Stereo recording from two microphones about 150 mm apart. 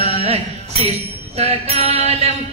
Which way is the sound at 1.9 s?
45° right (ahead or behind).